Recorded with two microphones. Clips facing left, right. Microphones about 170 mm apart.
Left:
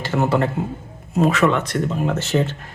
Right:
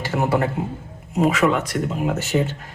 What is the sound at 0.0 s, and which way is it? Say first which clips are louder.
A man's voice: left 1 dB; 10° right (ahead or behind).